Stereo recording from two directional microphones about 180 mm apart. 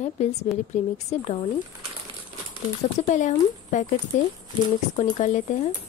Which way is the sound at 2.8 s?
40° left (ahead or behind).